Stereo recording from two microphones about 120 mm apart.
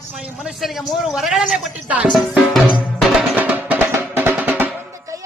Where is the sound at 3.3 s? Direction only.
15° right (ahead or behind).